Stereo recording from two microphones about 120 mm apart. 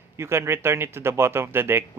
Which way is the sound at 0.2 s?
20° right (ahead or behind).